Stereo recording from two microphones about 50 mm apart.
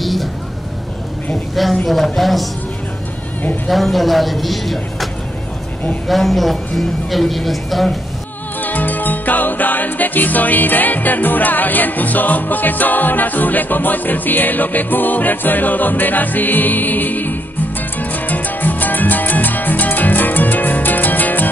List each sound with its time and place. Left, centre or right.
0.0 s a sound: centre
1.5 s a woman's voice: centre
3.6 s speech: centre
8.5 s music: left